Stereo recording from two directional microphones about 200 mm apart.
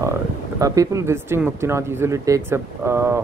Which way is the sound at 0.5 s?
15° right (ahead or behind).